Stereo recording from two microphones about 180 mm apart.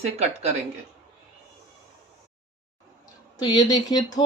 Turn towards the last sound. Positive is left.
turn(degrees=20)  # may be behind; listen again after turning